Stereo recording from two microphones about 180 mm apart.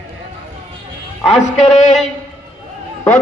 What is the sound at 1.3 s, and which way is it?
Speech, 40° left (ahead or behind).